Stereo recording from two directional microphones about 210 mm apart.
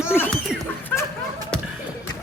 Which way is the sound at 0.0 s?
10° left (ahead or behind).